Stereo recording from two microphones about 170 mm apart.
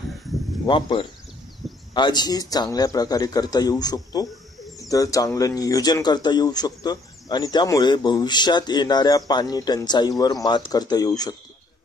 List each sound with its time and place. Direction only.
0.7 s speech: 30° left (ahead or behind)
1.6 s a sound: centre (ahead or behind)
2.0 s speech: 25° left (ahead or behind)